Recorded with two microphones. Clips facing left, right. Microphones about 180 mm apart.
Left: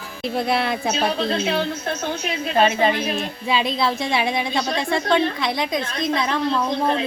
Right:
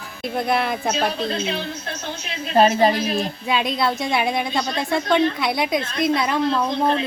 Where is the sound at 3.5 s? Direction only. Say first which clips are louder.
Left 1 dB; centre (ahead or behind).